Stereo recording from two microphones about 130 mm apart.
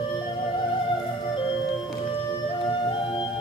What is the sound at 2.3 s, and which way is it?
Music, 40° left (ahead or behind).